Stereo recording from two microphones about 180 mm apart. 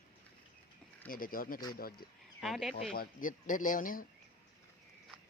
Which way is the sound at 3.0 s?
50° left (ahead or behind).